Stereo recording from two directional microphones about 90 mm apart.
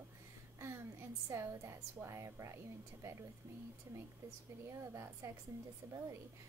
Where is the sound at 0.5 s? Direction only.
30° right (ahead or behind).